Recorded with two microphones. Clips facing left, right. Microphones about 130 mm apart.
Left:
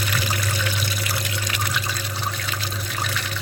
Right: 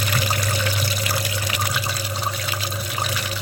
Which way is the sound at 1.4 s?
10° right (ahead or behind).